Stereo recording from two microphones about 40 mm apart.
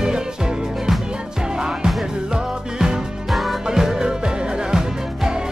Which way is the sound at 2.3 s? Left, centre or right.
Centre.